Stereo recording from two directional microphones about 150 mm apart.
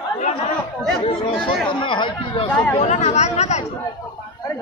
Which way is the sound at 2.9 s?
50° left (ahead or behind).